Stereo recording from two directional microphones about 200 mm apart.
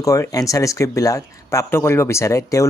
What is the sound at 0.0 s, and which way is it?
A man's voice, 15° left (ahead or behind).